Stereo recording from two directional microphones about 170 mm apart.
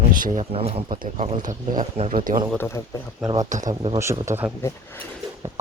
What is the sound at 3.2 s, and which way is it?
Speech, 20° right (ahead or behind).